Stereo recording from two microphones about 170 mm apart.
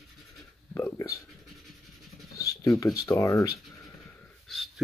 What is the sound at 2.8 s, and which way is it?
Speech, 20° left (ahead or behind).